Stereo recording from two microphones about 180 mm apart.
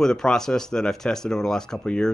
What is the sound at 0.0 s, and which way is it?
Speech, 5° left (ahead or behind).